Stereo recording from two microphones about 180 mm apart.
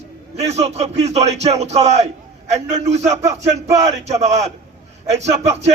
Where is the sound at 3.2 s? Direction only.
20° right (ahead or behind).